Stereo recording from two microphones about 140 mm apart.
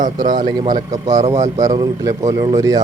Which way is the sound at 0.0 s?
70° right (ahead or behind).